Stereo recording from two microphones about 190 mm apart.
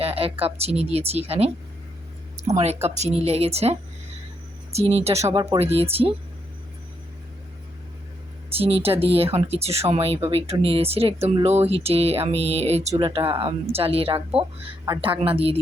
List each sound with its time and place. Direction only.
0.0 s speech: 30° right (ahead or behind)
8.5 s a woman's voice: 30° right (ahead or behind)